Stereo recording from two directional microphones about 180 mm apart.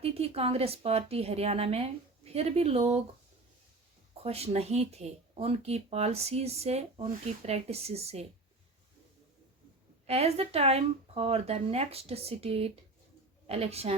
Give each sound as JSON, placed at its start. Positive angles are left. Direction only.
{"t": 0.0, "sound": "speech", "side_deg": -35}
{"t": 4.2, "sound": "speech", "side_deg": -35}
{"t": 10.1, "sound": "speech", "side_deg": -35}